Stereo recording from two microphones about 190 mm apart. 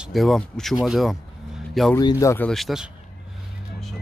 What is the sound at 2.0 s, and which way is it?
Speech, 20° left (ahead or behind).